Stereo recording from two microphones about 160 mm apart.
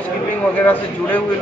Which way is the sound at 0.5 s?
10° left (ahead or behind).